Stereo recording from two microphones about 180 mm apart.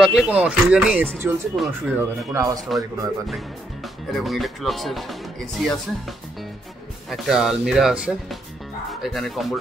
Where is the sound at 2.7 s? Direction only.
Centre (ahead or behind).